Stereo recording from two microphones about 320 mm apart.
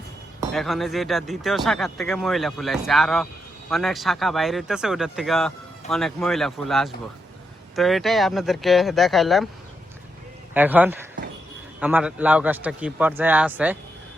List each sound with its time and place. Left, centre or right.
0.5 s speech: centre
10.5 s speech: centre